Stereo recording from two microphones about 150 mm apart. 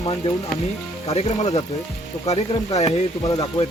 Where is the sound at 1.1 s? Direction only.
45° left (ahead or behind).